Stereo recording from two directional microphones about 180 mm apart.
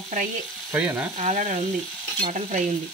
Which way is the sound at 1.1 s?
40° right (ahead or behind).